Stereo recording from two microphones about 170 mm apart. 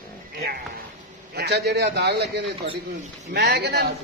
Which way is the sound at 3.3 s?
90° right.